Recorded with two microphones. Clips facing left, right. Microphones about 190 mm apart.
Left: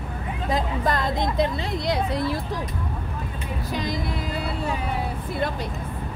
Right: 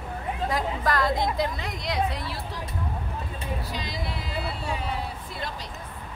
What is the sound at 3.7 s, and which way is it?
Speech, 50° left (ahead or behind).